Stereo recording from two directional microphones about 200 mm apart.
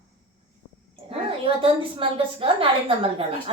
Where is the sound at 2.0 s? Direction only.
25° right (ahead or behind).